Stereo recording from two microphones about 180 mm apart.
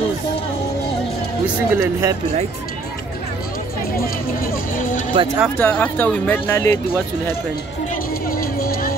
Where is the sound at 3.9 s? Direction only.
50° left (ahead or behind).